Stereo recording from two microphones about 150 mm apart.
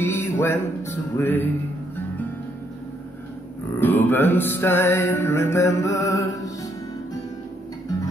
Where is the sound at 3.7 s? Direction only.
15° left (ahead or behind).